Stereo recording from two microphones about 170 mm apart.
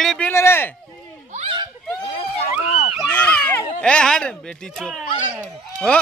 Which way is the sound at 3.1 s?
10° left (ahead or behind).